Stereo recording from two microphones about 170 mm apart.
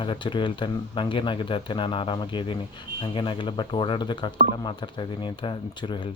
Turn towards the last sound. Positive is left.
turn(degrees=30)  # may be behind; listen again after turning